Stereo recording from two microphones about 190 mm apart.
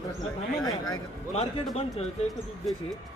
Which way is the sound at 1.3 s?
35° left (ahead or behind).